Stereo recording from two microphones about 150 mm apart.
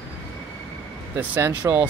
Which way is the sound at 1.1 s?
15° right (ahead or behind).